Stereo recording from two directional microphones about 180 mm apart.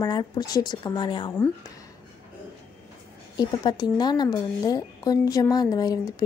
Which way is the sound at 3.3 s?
20° left (ahead or behind).